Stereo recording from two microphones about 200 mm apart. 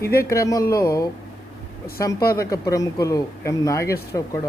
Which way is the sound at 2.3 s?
15° left (ahead or behind).